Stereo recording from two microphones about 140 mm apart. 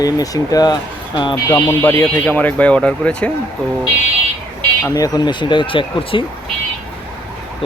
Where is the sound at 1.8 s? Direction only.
20° left (ahead or behind).